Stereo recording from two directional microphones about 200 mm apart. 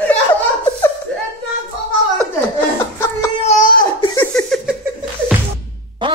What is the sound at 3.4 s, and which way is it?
Crying, 40° left (ahead or behind).